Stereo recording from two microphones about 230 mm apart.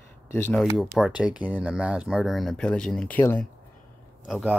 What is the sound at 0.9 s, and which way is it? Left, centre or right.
Speech, centre.